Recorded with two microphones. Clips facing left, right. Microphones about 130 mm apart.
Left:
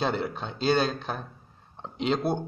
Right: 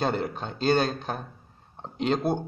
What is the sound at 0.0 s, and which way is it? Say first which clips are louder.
Speech: right 1 dB; 45° right (ahead or behind).